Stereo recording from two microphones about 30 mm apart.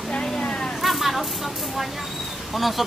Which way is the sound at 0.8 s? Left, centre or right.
Centre.